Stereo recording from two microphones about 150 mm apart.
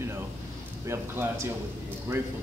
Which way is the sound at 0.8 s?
15° right (ahead or behind).